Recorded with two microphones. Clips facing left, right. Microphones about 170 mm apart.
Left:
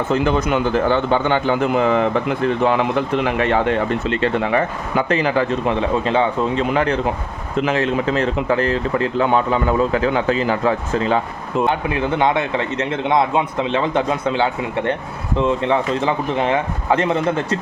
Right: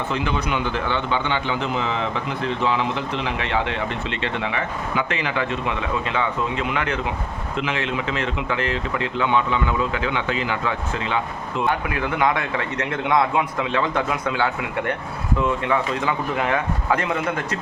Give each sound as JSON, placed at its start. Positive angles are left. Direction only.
{"t": 0.1, "sound": "a man's voice", "side_deg": 45}
{"t": 11.7, "sound": "a man's voice", "side_deg": 25}